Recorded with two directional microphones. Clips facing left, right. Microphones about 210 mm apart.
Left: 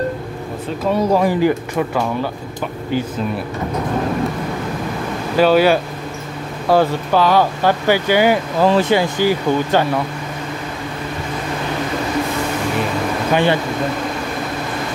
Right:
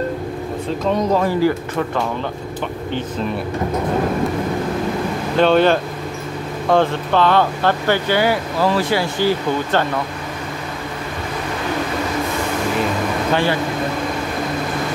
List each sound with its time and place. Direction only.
0.8 s speech: 10° left (ahead or behind)
5.4 s speech: 5° left (ahead or behind)
13.3 s speech: 20° left (ahead or behind)